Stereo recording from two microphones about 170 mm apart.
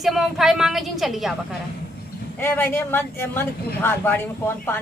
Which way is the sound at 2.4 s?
15° left (ahead or behind).